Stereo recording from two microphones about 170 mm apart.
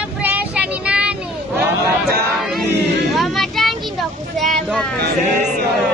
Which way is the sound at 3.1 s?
Centre (ahead or behind).